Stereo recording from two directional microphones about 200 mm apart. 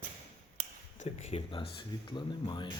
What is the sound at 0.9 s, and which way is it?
Speech, 35° left (ahead or behind).